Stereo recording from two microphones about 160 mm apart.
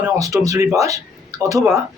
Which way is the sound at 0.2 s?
20° right (ahead or behind).